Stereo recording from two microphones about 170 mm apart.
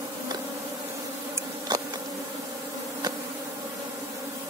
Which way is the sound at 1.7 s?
25° right (ahead or behind).